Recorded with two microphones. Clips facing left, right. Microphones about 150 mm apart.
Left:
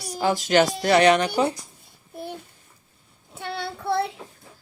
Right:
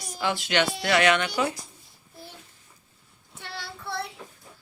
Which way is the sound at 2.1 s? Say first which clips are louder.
Left 11 dB; 60° left (ahead or behind).